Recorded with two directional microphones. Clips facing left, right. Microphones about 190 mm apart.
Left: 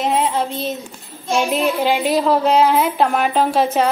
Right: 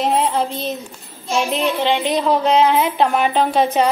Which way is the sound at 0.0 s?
Centre (ahead or behind).